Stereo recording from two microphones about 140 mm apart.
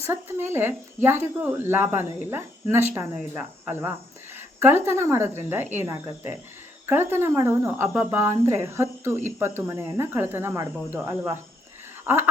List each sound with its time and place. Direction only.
0.1 s speech: 15° right (ahead or behind)